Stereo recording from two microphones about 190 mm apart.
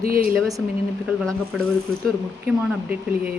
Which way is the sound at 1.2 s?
5° left (ahead or behind).